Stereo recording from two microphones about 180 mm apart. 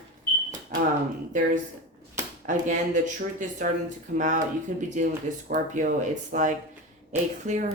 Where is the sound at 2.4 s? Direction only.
45° right (ahead or behind).